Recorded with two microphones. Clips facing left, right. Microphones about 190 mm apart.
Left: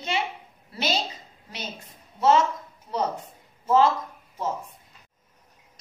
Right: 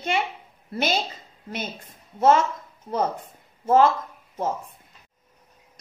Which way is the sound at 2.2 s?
50° right (ahead or behind).